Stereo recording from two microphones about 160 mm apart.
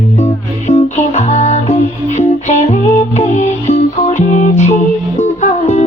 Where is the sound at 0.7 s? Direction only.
45° left (ahead or behind).